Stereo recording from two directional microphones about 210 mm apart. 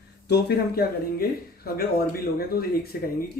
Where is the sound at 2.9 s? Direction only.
50° left (ahead or behind).